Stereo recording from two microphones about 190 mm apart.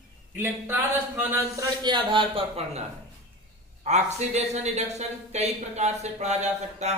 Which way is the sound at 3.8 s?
35° right (ahead or behind).